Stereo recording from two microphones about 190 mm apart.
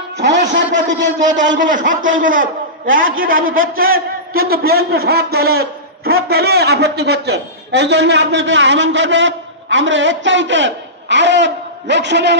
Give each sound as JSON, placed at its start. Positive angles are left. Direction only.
{"t": 0.2, "sound": "a man's voice", "side_deg": -65}
{"t": 1.5, "sound": "a man's voice", "side_deg": -45}